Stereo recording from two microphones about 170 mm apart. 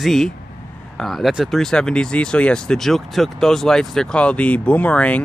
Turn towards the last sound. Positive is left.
turn(degrees=10)  # may be behind; listen again after turning